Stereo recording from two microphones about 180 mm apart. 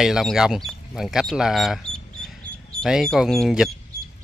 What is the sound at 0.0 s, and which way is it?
Speech, centre (ahead or behind).